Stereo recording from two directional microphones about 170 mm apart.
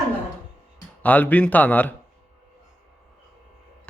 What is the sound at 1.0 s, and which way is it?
Speech, 10° left (ahead or behind).